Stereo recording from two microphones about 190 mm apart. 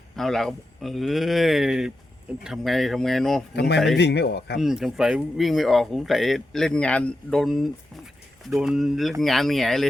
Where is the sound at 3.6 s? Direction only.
65° left (ahead or behind).